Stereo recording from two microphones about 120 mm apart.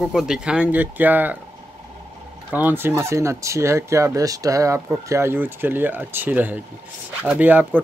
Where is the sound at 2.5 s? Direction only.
15° right (ahead or behind).